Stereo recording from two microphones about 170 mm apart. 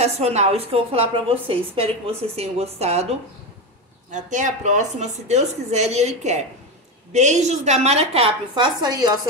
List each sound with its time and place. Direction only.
0.0 s a woman's voice: 40° right (ahead or behind)
4.1 s a woman's voice: 45° right (ahead or behind); by 9.1 s 25° right (ahead or behind)